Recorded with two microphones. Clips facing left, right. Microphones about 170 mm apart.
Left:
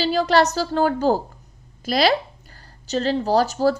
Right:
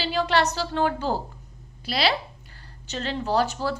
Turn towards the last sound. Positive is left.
turn(degrees=40)  # may be behind; listen again after turning